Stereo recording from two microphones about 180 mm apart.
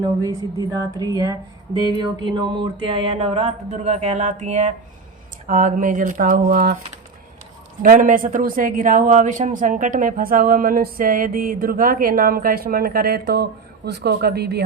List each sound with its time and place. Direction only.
0.9 s speech: 20° right (ahead or behind); by 6.7 s 50° right (ahead or behind)
7.8 s speech: 50° right (ahead or behind); by 14.6 s 65° right (ahead or behind)